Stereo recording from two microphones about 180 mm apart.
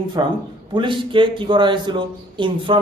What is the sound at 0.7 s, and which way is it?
A man's voice, 25° right (ahead or behind).